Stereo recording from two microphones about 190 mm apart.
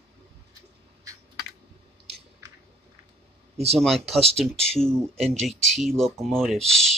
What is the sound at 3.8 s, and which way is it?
Speech, centre (ahead or behind).